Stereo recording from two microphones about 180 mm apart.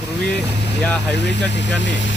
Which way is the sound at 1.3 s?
75° left (ahead or behind).